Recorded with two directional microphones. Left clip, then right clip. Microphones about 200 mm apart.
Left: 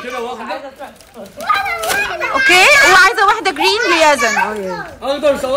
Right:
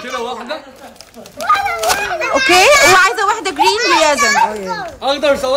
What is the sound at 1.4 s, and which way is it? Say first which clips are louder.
Speech: right 2 dB; 55° right (ahead or behind).